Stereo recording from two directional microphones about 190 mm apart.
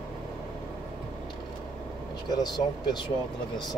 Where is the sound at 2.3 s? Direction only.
20° left (ahead or behind).